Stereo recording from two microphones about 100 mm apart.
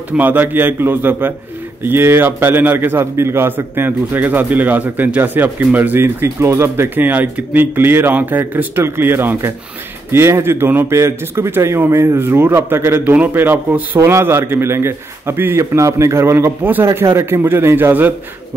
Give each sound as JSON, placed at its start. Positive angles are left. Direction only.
{"t": 0.1, "sound": "a man's voice", "side_deg": -20}